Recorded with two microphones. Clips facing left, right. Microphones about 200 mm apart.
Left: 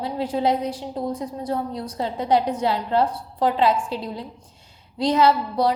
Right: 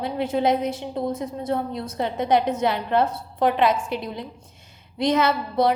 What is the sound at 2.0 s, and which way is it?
A woman's voice, 65° right (ahead or behind).